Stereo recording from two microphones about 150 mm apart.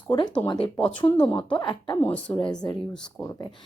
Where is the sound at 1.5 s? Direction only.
30° left (ahead or behind).